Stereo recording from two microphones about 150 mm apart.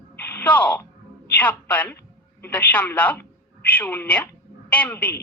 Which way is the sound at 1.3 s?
10° left (ahead or behind).